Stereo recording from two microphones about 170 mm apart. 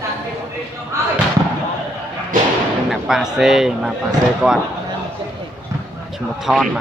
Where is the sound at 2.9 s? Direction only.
Centre (ahead or behind).